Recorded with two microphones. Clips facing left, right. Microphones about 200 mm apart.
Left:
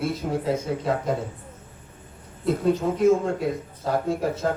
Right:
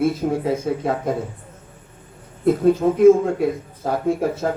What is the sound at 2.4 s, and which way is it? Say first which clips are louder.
Speech: right 6 dB; 55° right (ahead or behind).